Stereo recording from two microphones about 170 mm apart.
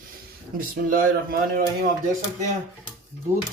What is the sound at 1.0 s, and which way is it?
Speech, 55° right (ahead or behind).